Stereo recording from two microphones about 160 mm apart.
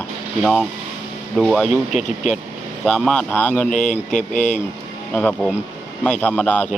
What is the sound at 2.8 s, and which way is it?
Speech, 5° left (ahead or behind).